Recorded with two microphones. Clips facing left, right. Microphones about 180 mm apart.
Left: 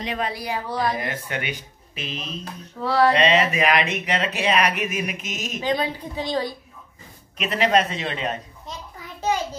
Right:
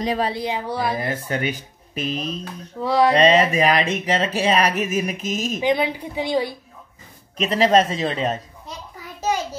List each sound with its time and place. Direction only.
0.0 s speech: 35° right (ahead or behind); by 0.9 s 10° right (ahead or behind)
0.9 s speech: 35° right (ahead or behind)
2.8 s a woman's voice: 15° right (ahead or behind)
3.2 s speech: 40° right (ahead or behind)
5.6 s a woman's voice: 15° right (ahead or behind)
7.3 s speech: 35° right (ahead or behind)